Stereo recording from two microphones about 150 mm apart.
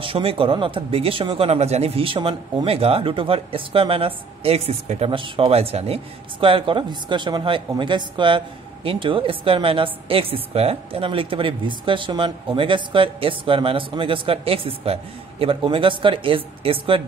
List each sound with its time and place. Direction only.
0.0 s speech: 40° right (ahead or behind)
1.5 s speech: 45° right (ahead or behind)